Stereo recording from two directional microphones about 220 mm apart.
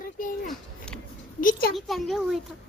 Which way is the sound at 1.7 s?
Centre (ahead or behind).